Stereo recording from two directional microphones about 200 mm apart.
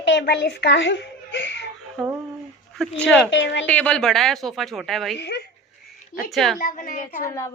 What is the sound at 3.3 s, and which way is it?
Speech, 65° left (ahead or behind).